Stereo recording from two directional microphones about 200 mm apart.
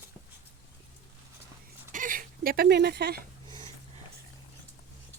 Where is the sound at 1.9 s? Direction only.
45° right (ahead or behind).